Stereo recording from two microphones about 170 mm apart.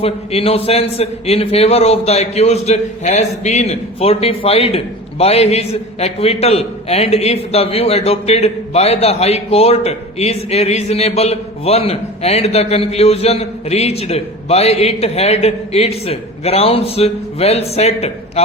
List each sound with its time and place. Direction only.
0.0 s a man's voice: 35° left (ahead or behind)